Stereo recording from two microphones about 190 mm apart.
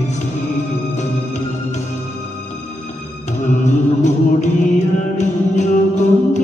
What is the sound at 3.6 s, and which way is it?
Music, 40° left (ahead or behind).